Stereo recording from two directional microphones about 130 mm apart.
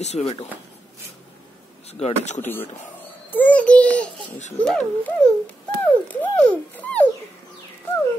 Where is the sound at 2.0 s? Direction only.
60° left (ahead or behind).